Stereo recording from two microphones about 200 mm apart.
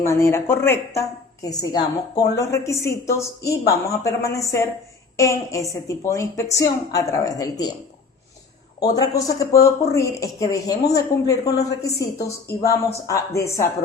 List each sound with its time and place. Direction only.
0.0 s speech: 15° left (ahead or behind)
8.8 s speech: 20° left (ahead or behind)